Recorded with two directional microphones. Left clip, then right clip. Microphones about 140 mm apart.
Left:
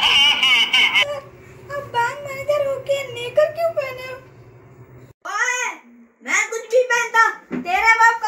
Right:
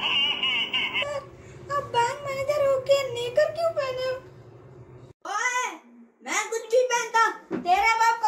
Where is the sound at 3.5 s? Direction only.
20° left (ahead or behind).